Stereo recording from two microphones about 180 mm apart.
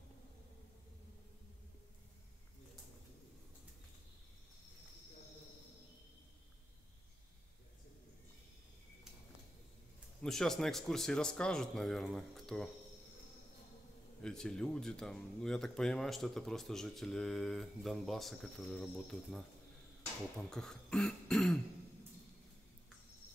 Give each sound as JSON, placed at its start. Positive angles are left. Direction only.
{"t": 10.2, "sound": "speech", "side_deg": 0}
{"t": 14.2, "sound": "speech", "side_deg": 5}